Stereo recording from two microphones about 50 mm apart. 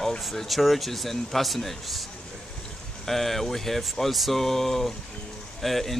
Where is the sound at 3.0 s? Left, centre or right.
Centre.